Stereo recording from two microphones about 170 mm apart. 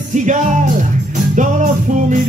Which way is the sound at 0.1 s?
45° right (ahead or behind).